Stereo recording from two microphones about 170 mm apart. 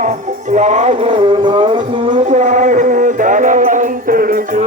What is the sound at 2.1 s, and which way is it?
Music, 45° right (ahead or behind).